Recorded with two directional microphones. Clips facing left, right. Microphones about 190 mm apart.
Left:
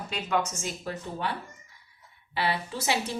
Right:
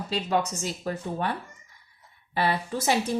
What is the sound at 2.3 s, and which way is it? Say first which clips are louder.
Speech: right 3 dB; 50° right (ahead or behind).